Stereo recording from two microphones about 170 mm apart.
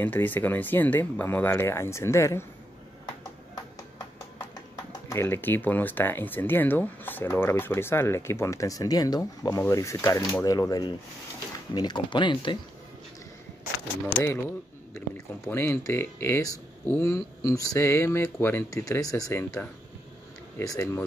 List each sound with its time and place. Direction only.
0.0 s speech: 10° left (ahead or behind)
5.1 s speech: 15° left (ahead or behind)
15.0 s speech: 15° left (ahead or behind)